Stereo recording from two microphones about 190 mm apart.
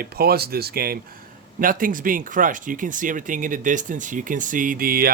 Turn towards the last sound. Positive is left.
turn(degrees=-50)  # may be behind; listen again after turning